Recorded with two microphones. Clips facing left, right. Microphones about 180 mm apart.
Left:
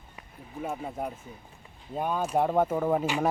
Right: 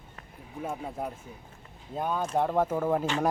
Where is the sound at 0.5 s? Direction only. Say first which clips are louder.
Left 1 dB; centre (ahead or behind).